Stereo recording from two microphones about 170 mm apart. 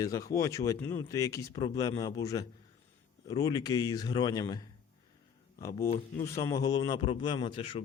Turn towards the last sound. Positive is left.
turn(degrees=30)  # may be behind; listen again after turning